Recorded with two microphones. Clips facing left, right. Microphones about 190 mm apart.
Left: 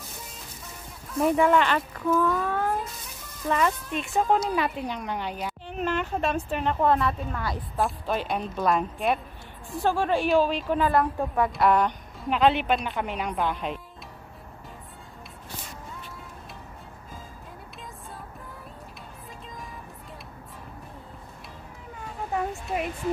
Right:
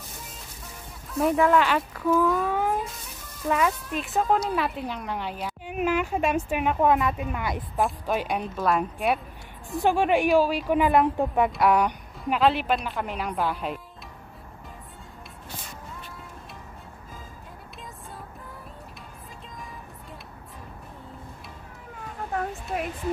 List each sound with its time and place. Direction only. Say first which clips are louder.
1.1 s a woman's voice: even; centre (ahead or behind)
9.8 s a woman's voice: right 2 dB; 15° right (ahead or behind)
22.3 s a sound: left 1 dB; centre (ahead or behind)